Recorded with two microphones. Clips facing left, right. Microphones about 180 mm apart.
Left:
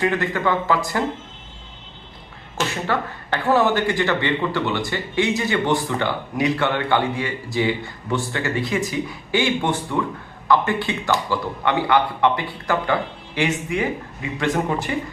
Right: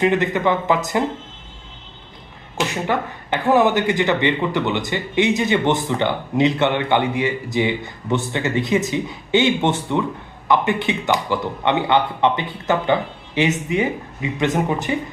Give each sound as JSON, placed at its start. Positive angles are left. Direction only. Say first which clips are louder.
{"t": 0.0, "sound": "speech", "louder": "right 3 dB", "side_deg": -20}
{"t": 2.6, "sound": "speech", "louder": "right 2 dB", "side_deg": -15}